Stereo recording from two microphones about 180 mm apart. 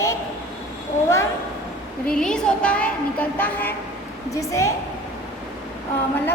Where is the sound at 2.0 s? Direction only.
5° left (ahead or behind).